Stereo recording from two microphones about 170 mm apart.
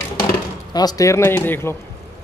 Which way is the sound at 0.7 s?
25° left (ahead or behind).